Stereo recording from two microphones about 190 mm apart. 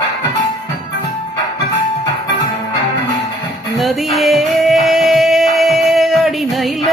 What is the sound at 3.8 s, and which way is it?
Music, centre (ahead or behind).